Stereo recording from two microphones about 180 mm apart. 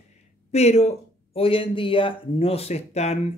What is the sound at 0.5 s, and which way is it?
A man's voice, 35° left (ahead or behind).